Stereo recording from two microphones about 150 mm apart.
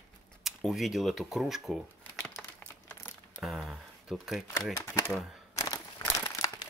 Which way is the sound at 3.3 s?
Centre (ahead or behind).